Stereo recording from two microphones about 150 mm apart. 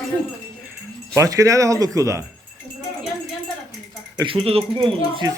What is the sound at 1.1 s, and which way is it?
Speech, 20° right (ahead or behind).